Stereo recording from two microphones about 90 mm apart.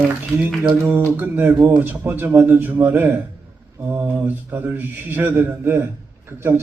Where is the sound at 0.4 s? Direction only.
20° right (ahead or behind).